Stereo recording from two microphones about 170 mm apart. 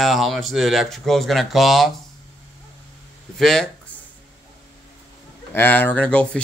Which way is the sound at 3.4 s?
5° left (ahead or behind).